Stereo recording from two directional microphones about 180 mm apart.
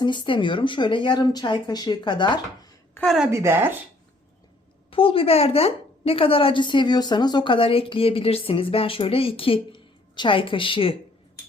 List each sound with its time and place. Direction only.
0.0 s speech: 25° left (ahead or behind)
3.0 s a woman's voice: centre (ahead or behind)
3.2 s speech: 15° right (ahead or behind)
4.9 s a woman's voice: 30° left (ahead or behind)